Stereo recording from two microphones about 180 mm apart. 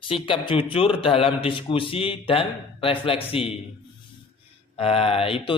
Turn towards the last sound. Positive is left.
turn(degrees=30)  # may be behind; listen again after turning